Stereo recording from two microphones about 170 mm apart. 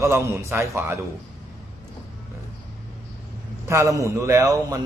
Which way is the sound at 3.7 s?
15° right (ahead or behind).